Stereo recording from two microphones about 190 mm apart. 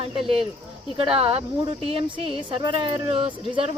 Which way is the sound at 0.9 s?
30° right (ahead or behind).